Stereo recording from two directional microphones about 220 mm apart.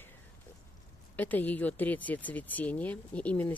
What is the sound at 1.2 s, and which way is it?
Speech, 10° left (ahead or behind).